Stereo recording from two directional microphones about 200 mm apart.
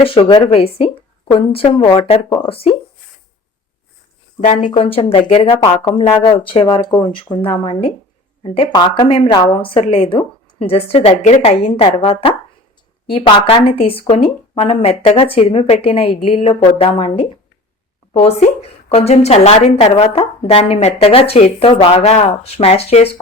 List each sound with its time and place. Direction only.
0.0 s a woman's voice: 25° left (ahead or behind)
4.4 s a woman's voice: 35° left (ahead or behind)